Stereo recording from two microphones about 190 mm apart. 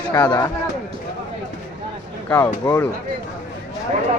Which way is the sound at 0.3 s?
15° left (ahead or behind).